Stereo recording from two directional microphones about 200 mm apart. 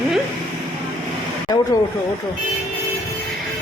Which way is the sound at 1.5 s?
20° left (ahead or behind).